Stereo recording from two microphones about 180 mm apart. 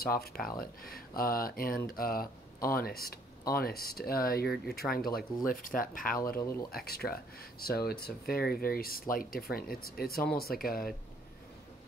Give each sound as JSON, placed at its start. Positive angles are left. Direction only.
{"t": 0.0, "sound": "speech", "side_deg": 55}